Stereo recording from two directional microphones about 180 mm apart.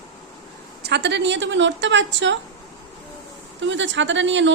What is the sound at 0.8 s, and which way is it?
A woman's voice, 70° right (ahead or behind).